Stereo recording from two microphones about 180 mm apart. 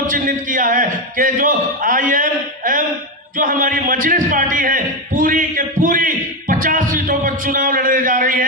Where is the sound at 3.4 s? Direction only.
50° right (ahead or behind).